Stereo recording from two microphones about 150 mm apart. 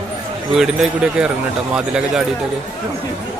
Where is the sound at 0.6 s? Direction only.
5° right (ahead or behind).